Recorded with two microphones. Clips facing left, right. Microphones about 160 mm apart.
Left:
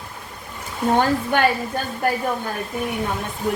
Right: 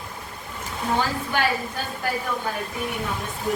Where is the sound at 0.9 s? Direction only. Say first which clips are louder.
Left 5 dB; 55° left (ahead or behind).